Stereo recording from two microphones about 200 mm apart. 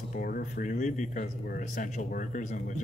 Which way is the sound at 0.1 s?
45° left (ahead or behind).